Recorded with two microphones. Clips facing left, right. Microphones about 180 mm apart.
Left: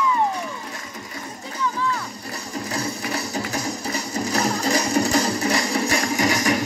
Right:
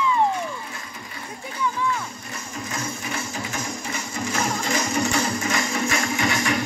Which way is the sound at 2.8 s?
35° left (ahead or behind).